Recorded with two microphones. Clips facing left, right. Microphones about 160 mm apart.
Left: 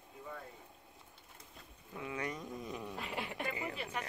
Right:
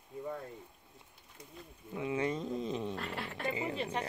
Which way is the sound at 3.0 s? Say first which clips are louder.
Right 1 dB; 10° left (ahead or behind).